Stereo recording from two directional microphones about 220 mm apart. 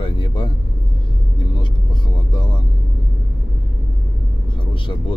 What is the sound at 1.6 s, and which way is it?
Speech, 20° left (ahead or behind).